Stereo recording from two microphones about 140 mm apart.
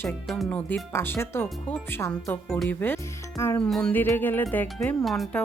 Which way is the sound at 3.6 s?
5° left (ahead or behind).